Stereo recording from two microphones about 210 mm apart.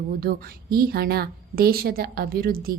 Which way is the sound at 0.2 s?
45° right (ahead or behind).